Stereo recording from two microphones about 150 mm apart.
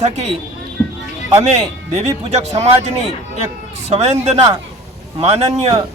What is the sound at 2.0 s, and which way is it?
A man's voice, 45° right (ahead or behind).